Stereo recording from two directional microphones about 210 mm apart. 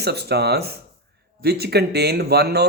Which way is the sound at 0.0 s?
50° right (ahead or behind).